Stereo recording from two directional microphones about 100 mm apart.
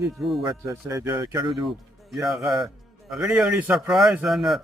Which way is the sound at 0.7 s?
35° right (ahead or behind).